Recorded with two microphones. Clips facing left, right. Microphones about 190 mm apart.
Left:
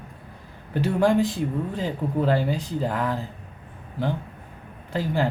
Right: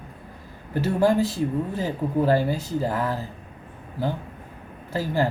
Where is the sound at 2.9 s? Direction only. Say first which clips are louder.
Even; 40° right (ahead or behind).